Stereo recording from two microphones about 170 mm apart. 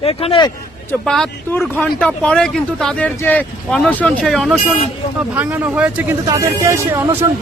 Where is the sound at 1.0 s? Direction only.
5° left (ahead or behind).